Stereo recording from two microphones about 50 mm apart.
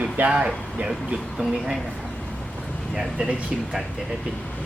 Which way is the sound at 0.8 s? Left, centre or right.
Right.